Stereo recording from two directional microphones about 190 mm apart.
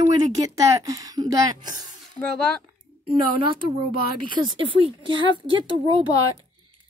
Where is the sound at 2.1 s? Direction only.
5° left (ahead or behind).